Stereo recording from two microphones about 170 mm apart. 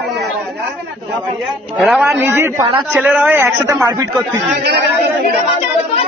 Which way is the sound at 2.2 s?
15° right (ahead or behind).